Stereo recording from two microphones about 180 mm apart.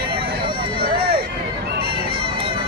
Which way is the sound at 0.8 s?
60° right (ahead or behind).